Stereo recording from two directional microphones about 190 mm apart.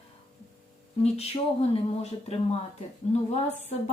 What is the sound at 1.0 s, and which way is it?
Speech, 35° left (ahead or behind).